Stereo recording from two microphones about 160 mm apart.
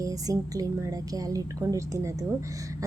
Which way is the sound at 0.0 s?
20° right (ahead or behind).